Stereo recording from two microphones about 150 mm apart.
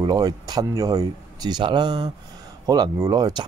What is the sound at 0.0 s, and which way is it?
Speech, 30° right (ahead or behind).